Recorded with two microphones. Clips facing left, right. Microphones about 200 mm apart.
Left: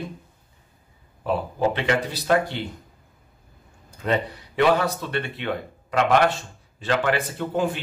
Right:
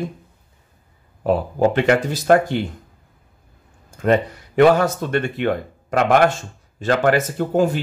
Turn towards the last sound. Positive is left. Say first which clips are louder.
# right 6 dB
turn(degrees=-40)  # may be behind; listen again after turning